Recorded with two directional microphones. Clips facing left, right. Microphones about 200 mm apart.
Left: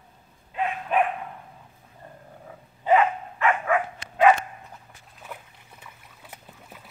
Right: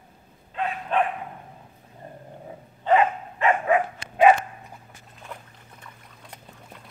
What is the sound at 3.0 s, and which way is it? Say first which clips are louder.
Dog: right 1 dB; 25° right (ahead or behind).